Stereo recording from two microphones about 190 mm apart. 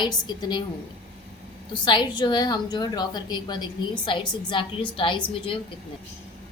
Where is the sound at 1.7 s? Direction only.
25° left (ahead or behind).